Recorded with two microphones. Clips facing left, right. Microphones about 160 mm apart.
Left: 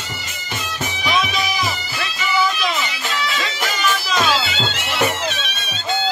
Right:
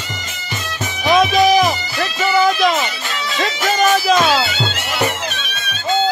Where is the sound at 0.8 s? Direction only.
50° right (ahead or behind).